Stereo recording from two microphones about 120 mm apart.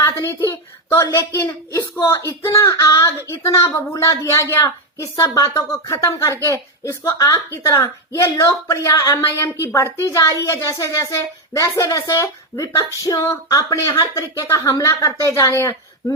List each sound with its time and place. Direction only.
0.0 s a woman's voice: 25° left (ahead or behind)
0.9 s a woman's voice: 35° left (ahead or behind)
1.3 s speech: 20° left (ahead or behind)